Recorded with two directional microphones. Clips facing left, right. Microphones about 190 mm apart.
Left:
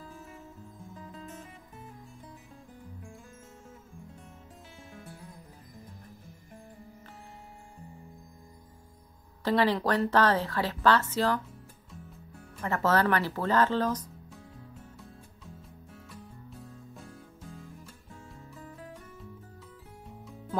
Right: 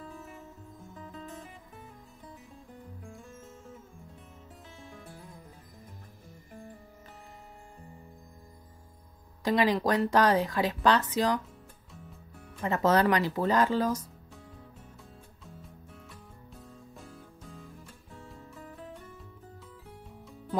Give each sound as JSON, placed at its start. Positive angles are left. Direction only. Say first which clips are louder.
{"t": 9.4, "sound": "speech", "louder": "even", "side_deg": -15}
{"t": 12.6, "sound": "speech", "louder": "right 2 dB", "side_deg": -20}
{"t": 16.9, "sound": "music", "louder": "left 1 dB", "side_deg": 0}